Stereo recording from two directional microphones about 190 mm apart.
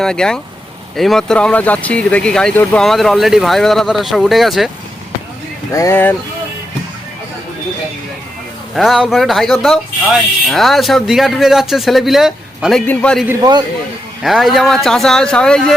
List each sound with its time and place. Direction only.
0.0 s speech: 5° left (ahead or behind)
5.7 s speech: 15° left (ahead or behind)
8.7 s speech: centre (ahead or behind)
13.2 s a man's voice: 20° right (ahead or behind)
14.2 s speech: centre (ahead or behind)